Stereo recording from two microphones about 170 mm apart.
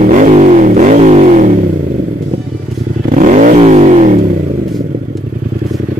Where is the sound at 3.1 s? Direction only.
50° right (ahead or behind).